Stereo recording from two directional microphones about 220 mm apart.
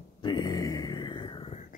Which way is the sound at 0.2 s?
20° left (ahead or behind).